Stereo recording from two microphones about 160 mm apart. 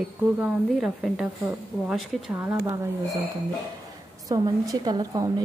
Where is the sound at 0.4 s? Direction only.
5° right (ahead or behind).